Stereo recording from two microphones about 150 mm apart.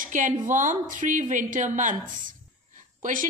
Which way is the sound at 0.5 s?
60° right (ahead or behind).